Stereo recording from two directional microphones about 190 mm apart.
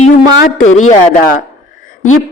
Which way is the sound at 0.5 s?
40° left (ahead or behind).